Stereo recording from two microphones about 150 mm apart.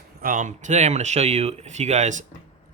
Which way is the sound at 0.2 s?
65° right (ahead or behind).